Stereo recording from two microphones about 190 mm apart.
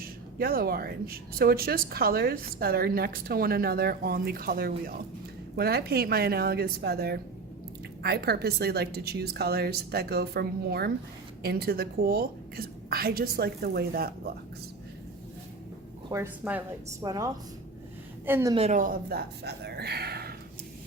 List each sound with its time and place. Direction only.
0.0 s a woman's voice: 50° right (ahead or behind)
16.0 s speech: 15° right (ahead or behind)
17.0 s a woman's voice: 20° right (ahead or behind)
18.5 s a woman's voice: 35° right (ahead or behind); by 20.3 s 55° right (ahead or behind)